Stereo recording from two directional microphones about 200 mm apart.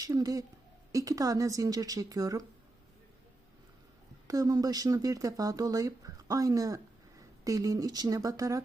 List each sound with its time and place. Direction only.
0.0 s speech: 15° right (ahead or behind)
4.3 s speech: 20° right (ahead or behind)